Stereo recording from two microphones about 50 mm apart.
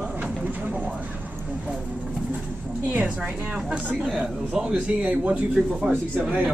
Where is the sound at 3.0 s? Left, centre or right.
Right.